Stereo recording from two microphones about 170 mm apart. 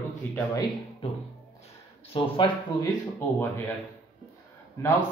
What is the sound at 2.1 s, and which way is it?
Speech, 30° left (ahead or behind).